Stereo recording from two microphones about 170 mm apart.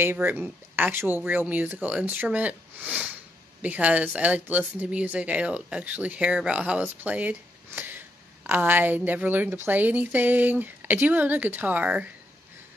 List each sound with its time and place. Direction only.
0.0 s speech: 10° right (ahead or behind)